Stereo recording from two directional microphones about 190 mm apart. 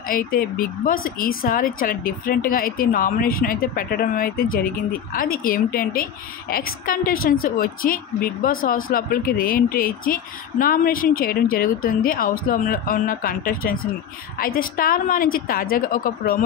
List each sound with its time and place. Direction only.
0.1 s speech: 50° left (ahead or behind)